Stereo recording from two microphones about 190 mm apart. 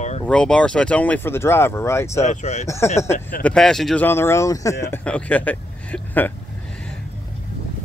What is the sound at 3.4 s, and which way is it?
Speech, 5° left (ahead or behind).